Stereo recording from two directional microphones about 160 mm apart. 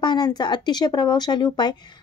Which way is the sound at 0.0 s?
25° left (ahead or behind).